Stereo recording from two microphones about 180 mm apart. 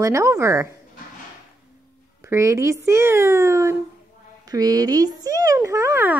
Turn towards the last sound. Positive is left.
turn(degrees=-10)  # may be behind; listen again after turning